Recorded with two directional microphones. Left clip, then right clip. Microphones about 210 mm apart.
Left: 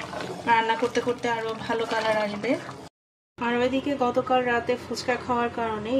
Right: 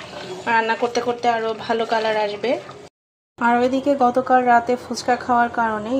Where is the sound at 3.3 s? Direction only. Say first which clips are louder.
Right 7 dB; 20° right (ahead or behind).